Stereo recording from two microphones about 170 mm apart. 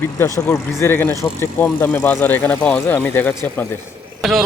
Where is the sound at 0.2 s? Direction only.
20° left (ahead or behind).